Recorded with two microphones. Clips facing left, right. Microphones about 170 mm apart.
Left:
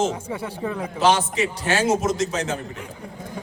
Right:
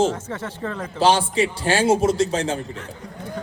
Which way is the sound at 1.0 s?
30° right (ahead or behind).